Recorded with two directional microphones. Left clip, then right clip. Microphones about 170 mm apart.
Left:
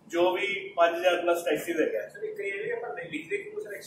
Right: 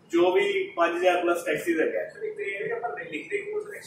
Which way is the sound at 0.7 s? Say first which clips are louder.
Left 1 dB; 15° left (ahead or behind).